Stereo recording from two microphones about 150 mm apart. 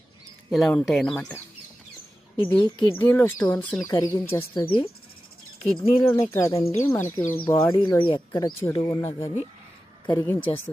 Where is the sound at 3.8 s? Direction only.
20° left (ahead or behind).